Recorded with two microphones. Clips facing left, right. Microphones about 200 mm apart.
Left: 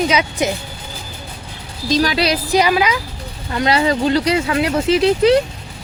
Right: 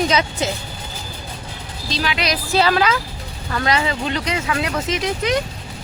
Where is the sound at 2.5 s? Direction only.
15° left (ahead or behind).